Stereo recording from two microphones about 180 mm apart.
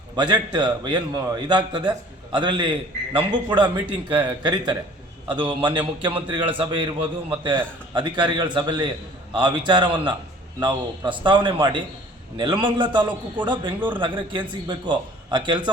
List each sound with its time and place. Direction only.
0.2 s a man's voice: 25° right (ahead or behind)